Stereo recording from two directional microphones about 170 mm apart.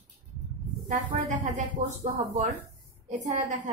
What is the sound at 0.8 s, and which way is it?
Speech, 50° right (ahead or behind).